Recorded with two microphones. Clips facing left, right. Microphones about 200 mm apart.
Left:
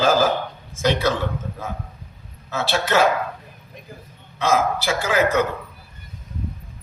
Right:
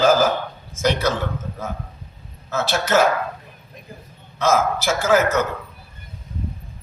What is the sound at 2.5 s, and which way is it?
Speech, 45° right (ahead or behind).